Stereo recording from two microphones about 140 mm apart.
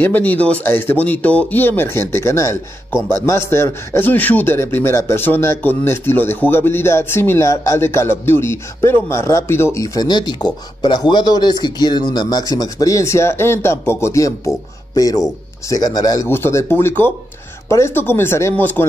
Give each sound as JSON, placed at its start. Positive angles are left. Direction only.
{"t": 0.0, "sound": "a man's voice", "side_deg": 10}
{"t": 16.3, "sound": "a man's voice", "side_deg": 15}